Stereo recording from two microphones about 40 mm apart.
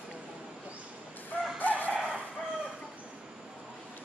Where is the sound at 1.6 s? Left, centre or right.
Left.